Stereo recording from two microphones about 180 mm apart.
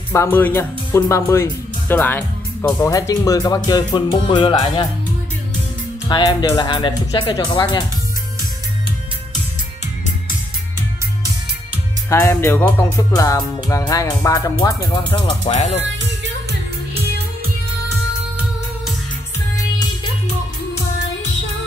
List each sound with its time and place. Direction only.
0.1 s speech: 15° left (ahead or behind)
6.0 s speech: 25° left (ahead or behind)
12.1 s speech: 15° left (ahead or behind)
15.4 s speech: 40° left (ahead or behind)